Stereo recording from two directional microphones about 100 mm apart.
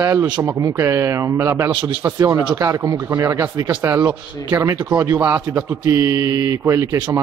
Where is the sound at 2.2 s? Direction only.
35° right (ahead or behind).